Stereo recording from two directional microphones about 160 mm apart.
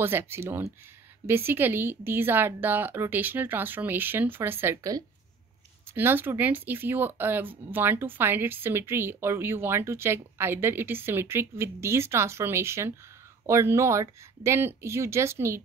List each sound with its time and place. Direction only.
0.0 s speech: 15° right (ahead or behind)